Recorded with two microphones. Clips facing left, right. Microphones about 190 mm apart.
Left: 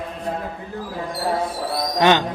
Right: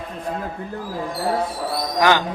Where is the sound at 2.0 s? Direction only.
20° left (ahead or behind).